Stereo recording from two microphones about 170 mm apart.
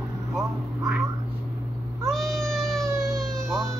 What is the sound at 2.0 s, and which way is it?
Cat, centre (ahead or behind).